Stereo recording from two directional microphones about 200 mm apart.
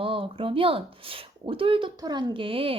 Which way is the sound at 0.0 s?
25° right (ahead or behind).